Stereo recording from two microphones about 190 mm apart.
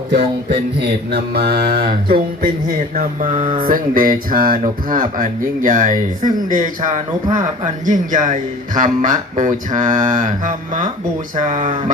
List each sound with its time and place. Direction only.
0.8 s mantra: 60° right (ahead or behind)
2.9 s speech: 45° right (ahead or behind)